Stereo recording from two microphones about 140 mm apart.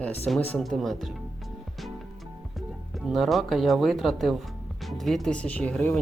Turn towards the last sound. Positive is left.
turn(degrees=10)  # may be behind; listen again after turning